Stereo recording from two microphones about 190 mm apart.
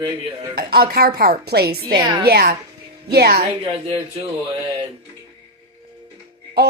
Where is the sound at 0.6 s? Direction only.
55° right (ahead or behind).